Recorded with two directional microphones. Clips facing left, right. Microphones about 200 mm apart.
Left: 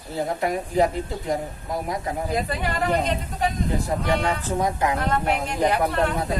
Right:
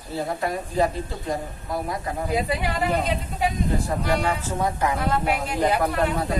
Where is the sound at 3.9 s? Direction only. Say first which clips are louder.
Left 2 dB; 15° left (ahead or behind).